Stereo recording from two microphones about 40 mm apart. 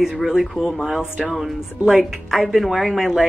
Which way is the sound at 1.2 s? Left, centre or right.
Centre.